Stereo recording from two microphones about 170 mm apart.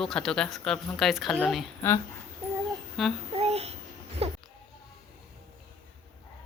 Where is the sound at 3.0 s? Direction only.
Centre (ahead or behind).